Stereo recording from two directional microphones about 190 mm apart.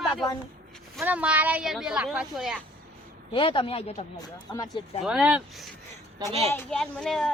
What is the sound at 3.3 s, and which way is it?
Speech, 30° left (ahead or behind).